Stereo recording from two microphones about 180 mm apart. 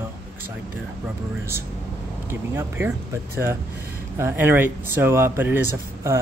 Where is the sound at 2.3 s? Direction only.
10° right (ahead or behind).